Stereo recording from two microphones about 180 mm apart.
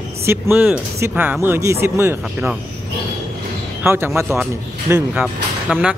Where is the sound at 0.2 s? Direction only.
15° right (ahead or behind).